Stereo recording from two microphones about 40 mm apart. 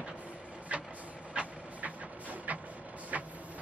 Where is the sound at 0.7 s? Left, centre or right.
Right.